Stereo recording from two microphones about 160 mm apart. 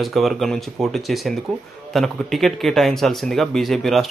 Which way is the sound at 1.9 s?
Centre (ahead or behind).